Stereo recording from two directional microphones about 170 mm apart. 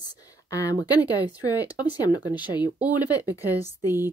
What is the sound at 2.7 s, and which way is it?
Speech, 10° right (ahead or behind).